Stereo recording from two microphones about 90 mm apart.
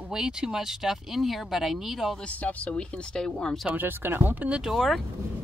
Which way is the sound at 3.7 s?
25° right (ahead or behind).